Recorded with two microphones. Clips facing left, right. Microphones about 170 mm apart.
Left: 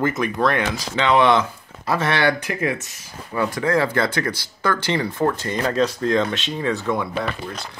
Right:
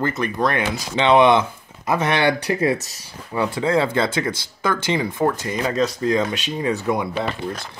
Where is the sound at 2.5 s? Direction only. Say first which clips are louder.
Right 4 dB; 35° right (ahead or behind).